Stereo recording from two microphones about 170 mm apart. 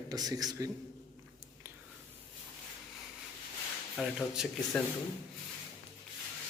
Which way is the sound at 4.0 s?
Centre (ahead or behind).